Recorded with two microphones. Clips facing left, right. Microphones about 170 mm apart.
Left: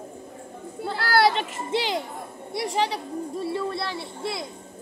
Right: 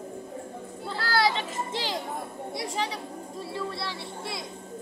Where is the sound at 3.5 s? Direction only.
55° left (ahead or behind).